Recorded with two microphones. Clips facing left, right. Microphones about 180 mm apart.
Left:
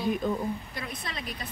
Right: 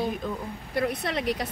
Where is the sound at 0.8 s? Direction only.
70° right (ahead or behind).